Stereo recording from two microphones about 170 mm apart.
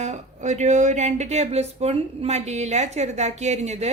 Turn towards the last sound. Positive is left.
turn(degrees=-40)  # may be behind; listen again after turning